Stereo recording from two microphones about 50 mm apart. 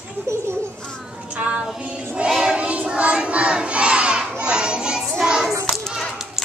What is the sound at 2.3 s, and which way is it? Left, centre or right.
Child singing, centre.